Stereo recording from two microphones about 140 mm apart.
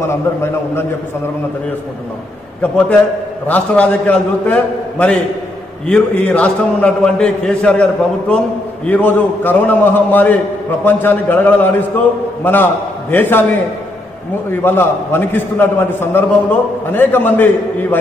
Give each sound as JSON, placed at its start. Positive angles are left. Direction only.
{"t": 0.0, "sound": "a man's voice", "side_deg": 20}
{"t": 3.4, "sound": "a man's voice", "side_deg": 10}
{"t": 14.5, "sound": "a man's voice", "side_deg": 15}